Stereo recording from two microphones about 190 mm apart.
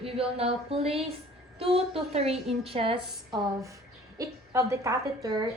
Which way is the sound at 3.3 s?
20° right (ahead or behind).